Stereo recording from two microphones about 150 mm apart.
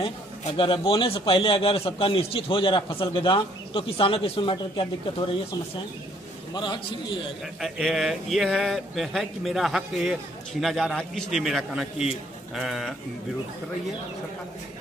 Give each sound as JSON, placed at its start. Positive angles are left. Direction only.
{"t": 0.6, "sound": "a man's voice", "side_deg": 35}
{"t": 6.5, "sound": "a man's voice", "side_deg": 30}
{"t": 7.6, "sound": "speech", "side_deg": 0}